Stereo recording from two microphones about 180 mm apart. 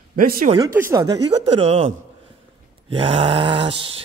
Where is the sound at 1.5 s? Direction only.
30° right (ahead or behind).